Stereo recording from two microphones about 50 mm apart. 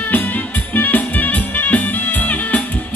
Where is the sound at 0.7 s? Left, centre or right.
Left.